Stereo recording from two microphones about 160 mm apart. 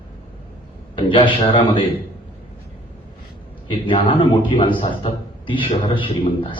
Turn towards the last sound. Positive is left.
turn(degrees=30)  # may be behind; listen again after turning